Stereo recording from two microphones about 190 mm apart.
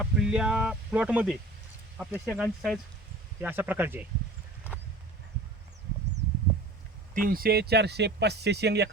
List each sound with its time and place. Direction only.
0.0 s speech: 5° right (ahead or behind)
7.1 s speech: 50° right (ahead or behind)